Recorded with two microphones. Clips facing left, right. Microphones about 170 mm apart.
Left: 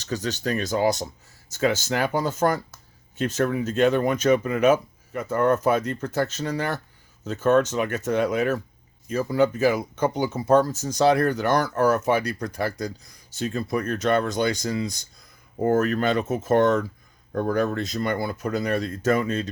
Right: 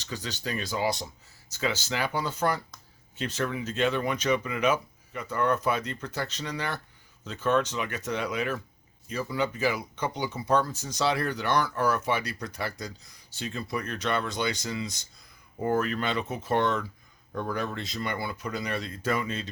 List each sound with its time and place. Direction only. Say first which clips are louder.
0.0 s speech: left 8 dB; 45° left (ahead or behind)